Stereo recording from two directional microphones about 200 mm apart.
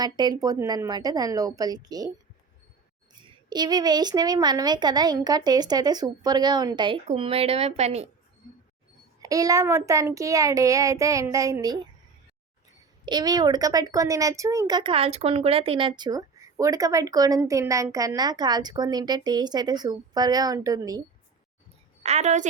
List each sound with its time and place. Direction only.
0.0 s a woman's voice: 20° right (ahead or behind)
3.5 s a woman's voice: 20° right (ahead or behind)
9.2 s speech: 15° right (ahead or behind)
13.1 s a woman's voice: 20° right (ahead or behind)
22.0 s a woman's voice: 35° right (ahead or behind)